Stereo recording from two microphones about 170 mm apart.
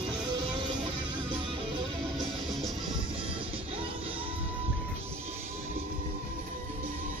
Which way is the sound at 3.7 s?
30° right (ahead or behind).